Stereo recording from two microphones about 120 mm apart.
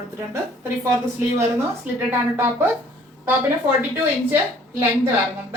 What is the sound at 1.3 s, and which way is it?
A woman's voice, 20° right (ahead or behind).